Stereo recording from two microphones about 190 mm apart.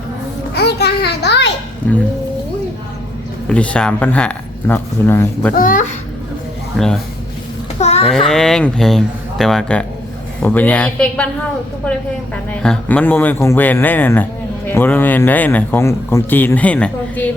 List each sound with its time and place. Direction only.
0.5 s a sound: 60° left (ahead or behind)
1.8 s speech: 10° left (ahead or behind)
3.5 s speech: 5° left (ahead or behind)
5.5 s speech: 45° left (ahead or behind)
6.7 s a man's voice: centre (ahead or behind)
7.8 s a sound: 35° left (ahead or behind)
8.0 s a man's voice: centre (ahead or behind)